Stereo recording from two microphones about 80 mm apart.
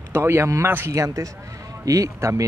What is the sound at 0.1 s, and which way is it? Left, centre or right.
Speech, right.